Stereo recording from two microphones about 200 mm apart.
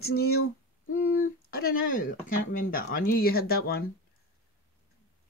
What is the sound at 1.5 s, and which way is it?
Speech, 50° left (ahead or behind).